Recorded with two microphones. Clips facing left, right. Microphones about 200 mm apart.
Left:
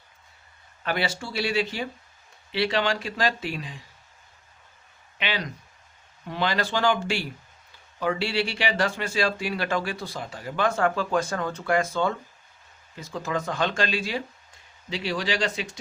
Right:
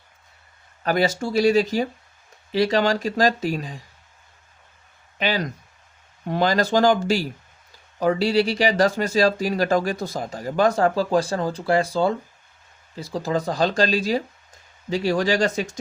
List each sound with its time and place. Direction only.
0.8 s speech: 40° right (ahead or behind)
5.1 s speech: 40° right (ahead or behind)